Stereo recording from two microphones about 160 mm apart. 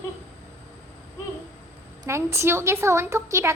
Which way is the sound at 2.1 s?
15° right (ahead or behind).